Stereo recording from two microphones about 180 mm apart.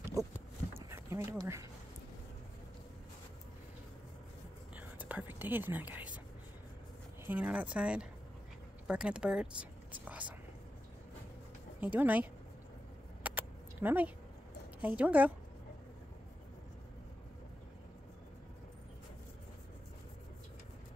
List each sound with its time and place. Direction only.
0.2 s a sound: 20° right (ahead or behind)
4.7 s whispering: 10° right (ahead or behind)
7.2 s speech: 10° right (ahead or behind)
11.8 s speech: 10° right (ahead or behind)
13.2 s a sound: 10° right (ahead or behind)
15.0 s speech: 10° right (ahead or behind)